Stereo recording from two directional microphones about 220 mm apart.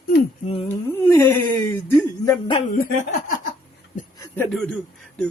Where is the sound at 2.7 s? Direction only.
35° left (ahead or behind).